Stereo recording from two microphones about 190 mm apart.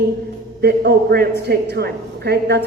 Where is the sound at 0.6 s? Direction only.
60° right (ahead or behind).